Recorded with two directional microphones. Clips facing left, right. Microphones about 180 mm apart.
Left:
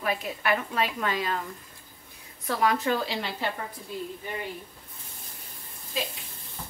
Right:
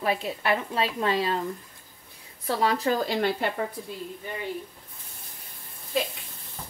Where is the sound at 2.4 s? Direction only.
30° right (ahead or behind); by 3.4 s 55° right (ahead or behind).